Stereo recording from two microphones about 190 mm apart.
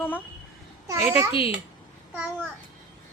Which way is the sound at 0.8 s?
15° right (ahead or behind).